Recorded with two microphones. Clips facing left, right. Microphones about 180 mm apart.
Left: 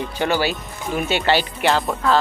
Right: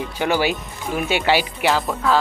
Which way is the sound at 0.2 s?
15° right (ahead or behind).